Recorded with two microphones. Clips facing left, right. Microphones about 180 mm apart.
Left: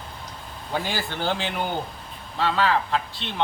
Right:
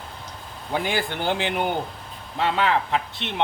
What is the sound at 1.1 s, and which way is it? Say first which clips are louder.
A man's voice: right 2 dB; 15° right (ahead or behind).